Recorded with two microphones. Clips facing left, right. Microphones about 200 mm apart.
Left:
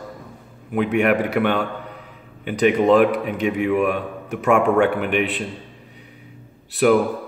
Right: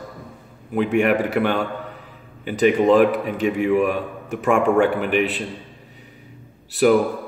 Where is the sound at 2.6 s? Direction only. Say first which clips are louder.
Even; centre (ahead or behind).